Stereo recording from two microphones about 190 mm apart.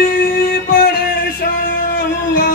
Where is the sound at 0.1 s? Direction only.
50° left (ahead or behind).